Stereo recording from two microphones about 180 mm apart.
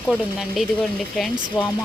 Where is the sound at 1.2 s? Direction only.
10° left (ahead or behind).